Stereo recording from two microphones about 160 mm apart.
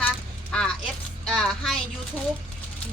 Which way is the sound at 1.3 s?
5° left (ahead or behind).